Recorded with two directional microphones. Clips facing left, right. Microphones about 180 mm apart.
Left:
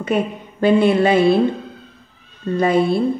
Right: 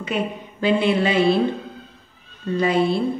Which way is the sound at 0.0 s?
50° left (ahead or behind).